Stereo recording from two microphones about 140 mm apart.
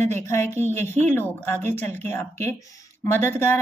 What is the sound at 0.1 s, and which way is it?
A woman's voice, 20° left (ahead or behind).